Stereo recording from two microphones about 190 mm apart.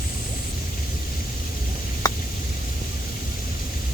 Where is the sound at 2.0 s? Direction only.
20° left (ahead or behind).